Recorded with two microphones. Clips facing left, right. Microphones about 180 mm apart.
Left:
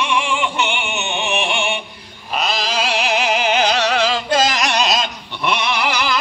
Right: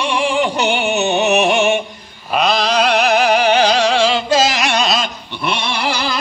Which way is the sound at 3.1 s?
35° right (ahead or behind).